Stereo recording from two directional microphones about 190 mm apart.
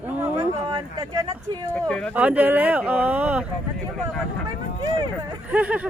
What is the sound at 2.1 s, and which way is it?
Speech, 10° right (ahead or behind).